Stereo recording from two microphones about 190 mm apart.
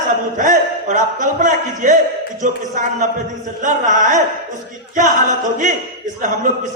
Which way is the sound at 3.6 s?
40° right (ahead or behind).